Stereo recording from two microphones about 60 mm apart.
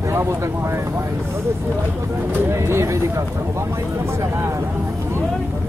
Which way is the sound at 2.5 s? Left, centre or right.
Right.